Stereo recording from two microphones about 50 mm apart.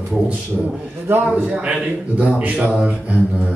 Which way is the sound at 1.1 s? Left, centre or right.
Right.